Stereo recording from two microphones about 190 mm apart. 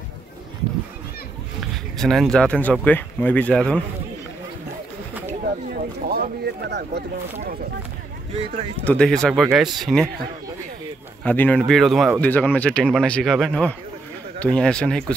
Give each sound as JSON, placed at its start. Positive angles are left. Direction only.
{"t": 1.6, "sound": "speech", "side_deg": 0}
{"t": 6.0, "sound": "speech", "side_deg": -55}
{"t": 8.8, "sound": "speech", "side_deg": 5}
{"t": 11.2, "sound": "speech", "side_deg": 10}